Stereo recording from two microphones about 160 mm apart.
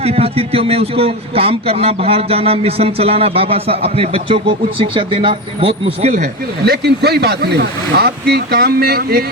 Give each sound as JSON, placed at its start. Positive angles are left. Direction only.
{"t": 0.0, "sound": "a man's voice", "side_deg": -40}
{"t": 6.2, "sound": "speech", "side_deg": -85}